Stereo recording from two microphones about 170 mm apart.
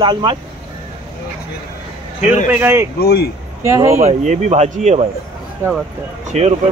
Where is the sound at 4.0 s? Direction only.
45° right (ahead or behind).